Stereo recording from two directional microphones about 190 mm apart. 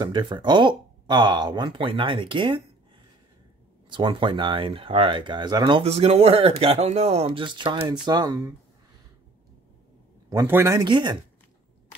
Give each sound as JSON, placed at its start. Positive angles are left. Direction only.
{"t": 0.0, "sound": "speech", "side_deg": -25}
{"t": 3.9, "sound": "speech", "side_deg": -25}
{"t": 10.3, "sound": "speech", "side_deg": -10}